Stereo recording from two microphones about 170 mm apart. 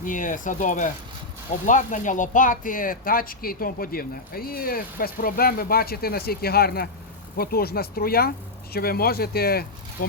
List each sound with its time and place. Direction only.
0.0 s speech: 50° left (ahead or behind)